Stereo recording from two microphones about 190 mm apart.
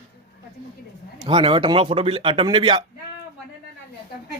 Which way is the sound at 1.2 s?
25° right (ahead or behind).